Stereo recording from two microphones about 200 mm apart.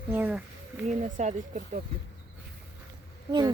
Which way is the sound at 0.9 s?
40° right (ahead or behind).